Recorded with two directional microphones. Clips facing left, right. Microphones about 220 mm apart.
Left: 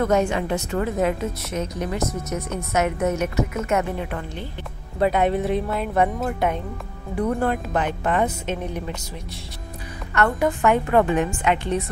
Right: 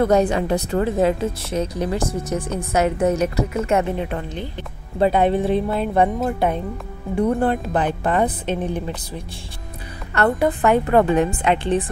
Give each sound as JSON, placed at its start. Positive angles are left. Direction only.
{"t": 0.0, "sound": "speech", "side_deg": -35}
{"t": 10.1, "sound": "speech", "side_deg": -35}